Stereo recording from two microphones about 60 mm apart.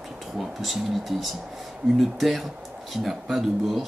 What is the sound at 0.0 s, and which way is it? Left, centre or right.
Speech, centre.